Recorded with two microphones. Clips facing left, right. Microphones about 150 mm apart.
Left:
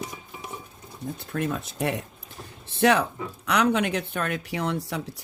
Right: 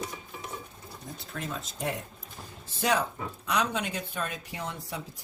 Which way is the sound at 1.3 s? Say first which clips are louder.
Left 8 dB; 60° left (ahead or behind).